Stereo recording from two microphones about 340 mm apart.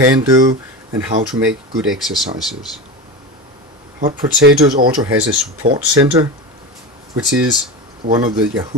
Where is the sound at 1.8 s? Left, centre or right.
Centre.